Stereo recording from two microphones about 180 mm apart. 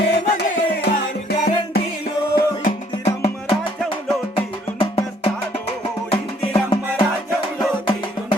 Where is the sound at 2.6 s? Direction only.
35° left (ahead or behind).